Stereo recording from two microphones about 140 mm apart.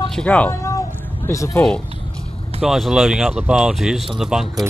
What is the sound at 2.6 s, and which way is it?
Speech, 5° right (ahead or behind).